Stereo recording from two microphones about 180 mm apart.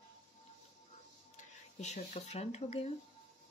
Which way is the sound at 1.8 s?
40° left (ahead or behind).